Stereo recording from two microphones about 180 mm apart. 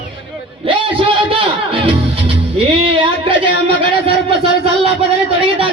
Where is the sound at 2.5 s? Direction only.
30° right (ahead or behind).